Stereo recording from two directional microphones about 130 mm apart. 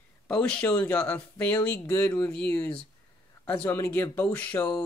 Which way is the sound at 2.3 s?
10° left (ahead or behind).